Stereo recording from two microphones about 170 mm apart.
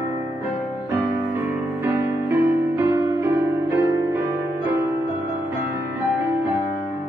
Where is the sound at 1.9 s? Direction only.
15° right (ahead or behind).